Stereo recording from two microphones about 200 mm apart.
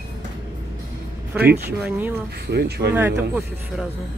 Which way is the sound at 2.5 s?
55° right (ahead or behind).